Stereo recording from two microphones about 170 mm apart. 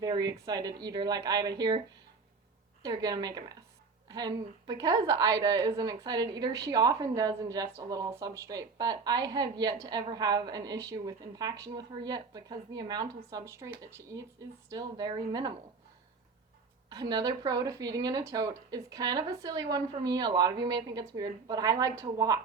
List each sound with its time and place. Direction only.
0.0 s a woman's voice: 20° right (ahead or behind)
2.8 s a woman's voice: 25° right (ahead or behind)
16.9 s a woman's voice: 25° right (ahead or behind)